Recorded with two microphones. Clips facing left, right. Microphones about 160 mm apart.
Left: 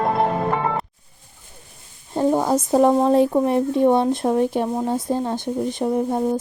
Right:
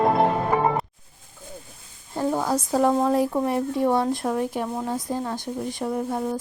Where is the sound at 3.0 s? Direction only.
25° left (ahead or behind).